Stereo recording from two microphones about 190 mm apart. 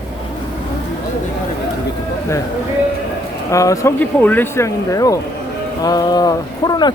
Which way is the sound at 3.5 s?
15° left (ahead or behind).